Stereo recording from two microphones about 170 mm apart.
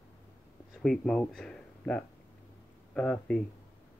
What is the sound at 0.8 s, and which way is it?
Speech, 5° left (ahead or behind).